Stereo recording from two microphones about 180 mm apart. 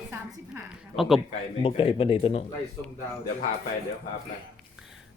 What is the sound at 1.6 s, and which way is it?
Speech, 30° left (ahead or behind).